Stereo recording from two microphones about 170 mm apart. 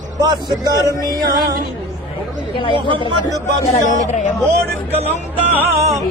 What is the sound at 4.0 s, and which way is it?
Speech, 45° left (ahead or behind).